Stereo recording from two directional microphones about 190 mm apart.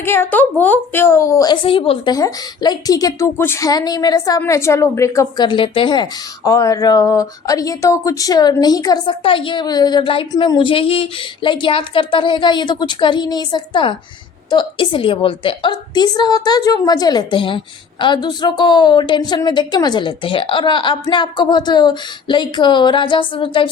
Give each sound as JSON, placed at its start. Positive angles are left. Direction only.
{"t": 0.0, "sound": "a woman's voice", "side_deg": 10}